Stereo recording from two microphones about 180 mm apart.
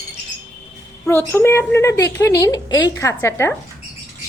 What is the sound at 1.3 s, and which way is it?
Speech, 15° left (ahead or behind).